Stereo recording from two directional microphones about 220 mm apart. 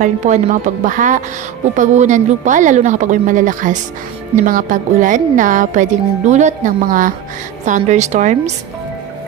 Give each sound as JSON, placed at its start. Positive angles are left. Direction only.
{"t": 0.0, "sound": "a woman's voice", "side_deg": -35}